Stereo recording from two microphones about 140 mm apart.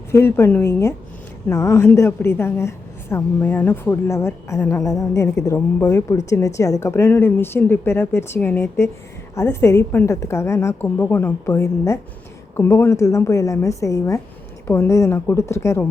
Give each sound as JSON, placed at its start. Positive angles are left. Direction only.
{"t": 0.1, "sound": "a woman's voice", "side_deg": 20}